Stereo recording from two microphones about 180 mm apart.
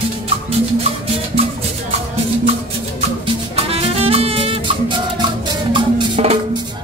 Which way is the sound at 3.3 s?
30° right (ahead or behind).